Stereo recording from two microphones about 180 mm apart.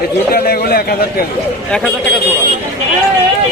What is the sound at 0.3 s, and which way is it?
Speech, 60° left (ahead or behind).